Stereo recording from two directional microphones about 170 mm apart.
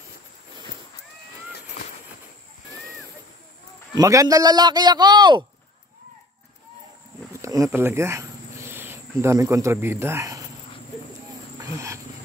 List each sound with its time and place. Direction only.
3.9 s a man's voice: 20° right (ahead or behind)
7.4 s cricket: 20° right (ahead or behind)
11.6 s wild animals: 15° right (ahead or behind)